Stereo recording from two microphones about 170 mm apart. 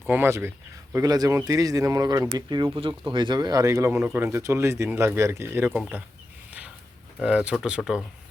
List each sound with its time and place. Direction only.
0.1 s speech: 15° right (ahead or behind)
7.2 s speech: 5° right (ahead or behind)